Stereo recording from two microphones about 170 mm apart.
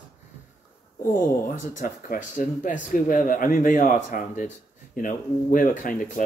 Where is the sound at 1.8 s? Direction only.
50° left (ahead or behind).